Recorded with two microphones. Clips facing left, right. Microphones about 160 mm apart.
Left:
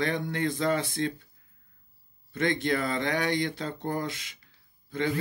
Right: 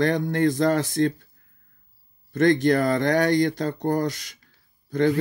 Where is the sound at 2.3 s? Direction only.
45° right (ahead or behind).